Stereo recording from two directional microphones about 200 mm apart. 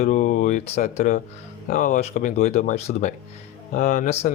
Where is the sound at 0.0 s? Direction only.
40° left (ahead or behind).